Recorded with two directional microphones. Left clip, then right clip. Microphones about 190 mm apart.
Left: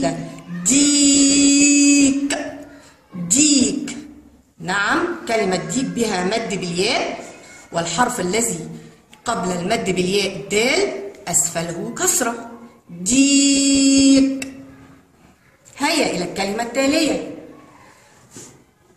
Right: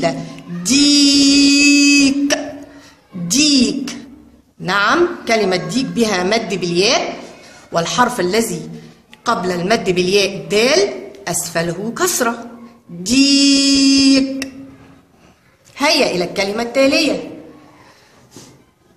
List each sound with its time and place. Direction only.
0.7 s a sound: 50° right (ahead or behind)
4.6 s a woman's voice: 50° right (ahead or behind)
15.7 s a woman's voice: 50° right (ahead or behind)